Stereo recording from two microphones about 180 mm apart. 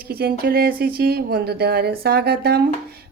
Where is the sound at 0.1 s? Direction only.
60° right (ahead or behind).